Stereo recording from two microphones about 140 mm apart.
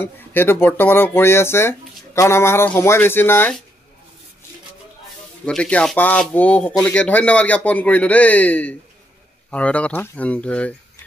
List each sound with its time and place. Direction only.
0.0 s speech: 15° left (ahead or behind)
5.4 s speech: 10° left (ahead or behind)